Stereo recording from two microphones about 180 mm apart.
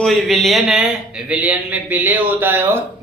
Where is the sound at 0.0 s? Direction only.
Centre (ahead or behind).